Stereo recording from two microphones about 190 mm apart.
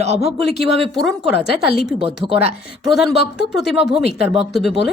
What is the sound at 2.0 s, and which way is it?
Speech, 30° right (ahead or behind).